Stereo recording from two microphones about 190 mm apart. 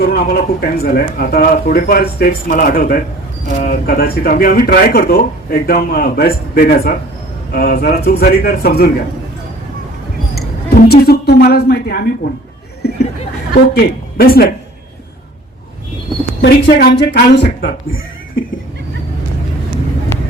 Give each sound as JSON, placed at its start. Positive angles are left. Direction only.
{"t": 0.1, "sound": "speech", "side_deg": 55}
{"t": 10.3, "sound": "a woman's voice", "side_deg": 55}
{"t": 13.5, "sound": "speech", "side_deg": 55}
{"t": 16.4, "sound": "speech", "side_deg": 55}